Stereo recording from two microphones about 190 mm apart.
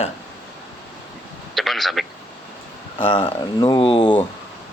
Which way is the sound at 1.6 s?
Centre (ahead or behind).